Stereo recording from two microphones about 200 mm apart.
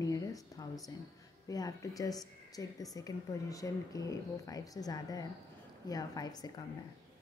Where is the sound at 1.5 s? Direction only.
20° left (ahead or behind).